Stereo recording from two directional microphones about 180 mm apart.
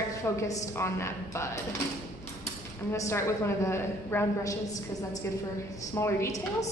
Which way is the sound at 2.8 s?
15° left (ahead or behind).